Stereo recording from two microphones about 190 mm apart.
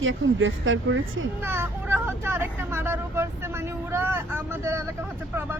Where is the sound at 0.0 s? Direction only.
90° right.